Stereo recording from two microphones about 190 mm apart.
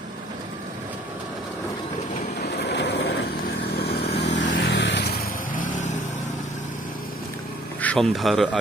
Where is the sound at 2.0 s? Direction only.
50° left (ahead or behind).